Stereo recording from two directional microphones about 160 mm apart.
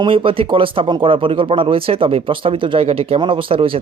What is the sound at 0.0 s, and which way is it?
Speech, 35° right (ahead or behind).